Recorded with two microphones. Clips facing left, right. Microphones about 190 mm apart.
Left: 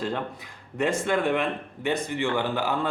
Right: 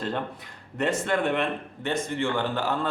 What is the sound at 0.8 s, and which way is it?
Speech, 5° left (ahead or behind).